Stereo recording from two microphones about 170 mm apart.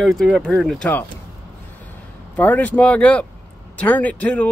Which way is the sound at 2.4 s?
10° left (ahead or behind).